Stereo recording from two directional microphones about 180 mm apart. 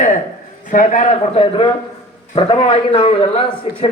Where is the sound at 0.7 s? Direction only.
45° left (ahead or behind).